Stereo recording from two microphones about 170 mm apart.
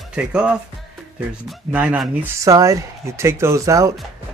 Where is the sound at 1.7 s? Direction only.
5° right (ahead or behind).